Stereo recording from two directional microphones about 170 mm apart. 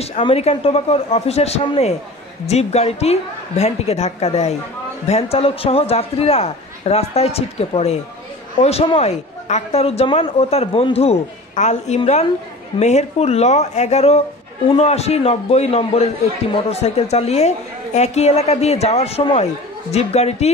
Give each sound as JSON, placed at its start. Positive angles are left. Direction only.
{"t": 0.0, "sound": "a woman's voice", "side_deg": 35}